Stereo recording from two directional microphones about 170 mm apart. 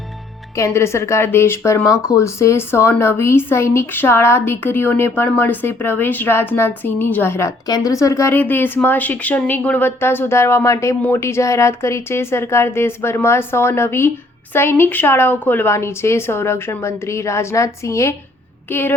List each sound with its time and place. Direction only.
0.5 s speech: 15° left (ahead or behind)
1.9 s speech: 5° right (ahead or behind)
2.1 s speech: 15° left (ahead or behind)